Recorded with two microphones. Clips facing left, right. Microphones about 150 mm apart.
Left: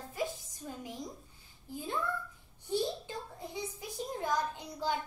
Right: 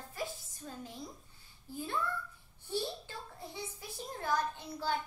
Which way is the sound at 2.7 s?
15° left (ahead or behind).